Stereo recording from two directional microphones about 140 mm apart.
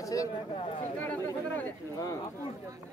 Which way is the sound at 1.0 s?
10° left (ahead or behind).